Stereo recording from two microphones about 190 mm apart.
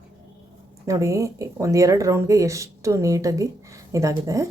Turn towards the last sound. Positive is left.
turn(degrees=-15)  # may be behind; listen again after turning